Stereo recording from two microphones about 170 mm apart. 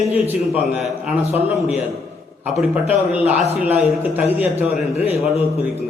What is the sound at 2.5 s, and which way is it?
A man's voice, 5° right (ahead or behind).